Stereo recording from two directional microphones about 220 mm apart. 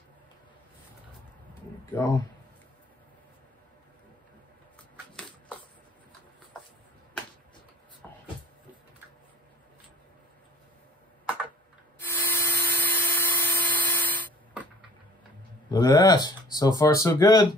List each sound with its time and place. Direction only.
1.9 s speech: 15° left (ahead or behind)
8.0 s a sound: 10° left (ahead or behind)
12.0 s dental drill: 10° left (ahead or behind)
15.7 s speech: 20° left (ahead or behind)